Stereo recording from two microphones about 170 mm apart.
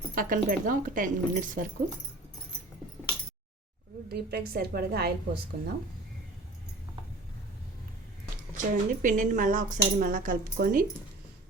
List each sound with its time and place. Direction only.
0.2 s speech: 55° right (ahead or behind)
4.1 s a woman's voice: 65° right (ahead or behind)
8.5 s speech: 50° right (ahead or behind)